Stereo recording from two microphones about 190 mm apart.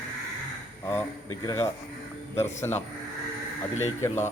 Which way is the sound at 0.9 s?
15° left (ahead or behind).